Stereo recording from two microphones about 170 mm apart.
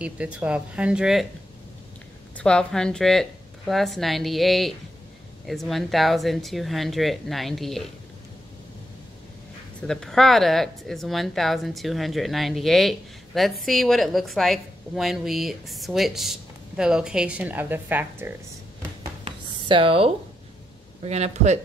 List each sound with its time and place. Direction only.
0.0 s speech: 5° right (ahead or behind)
2.3 s speech: 5° left (ahead or behind)
9.8 s speech: 5° left (ahead or behind)
19.2 s a sound: 30° right (ahead or behind)
21.0 s speech: 40° right (ahead or behind)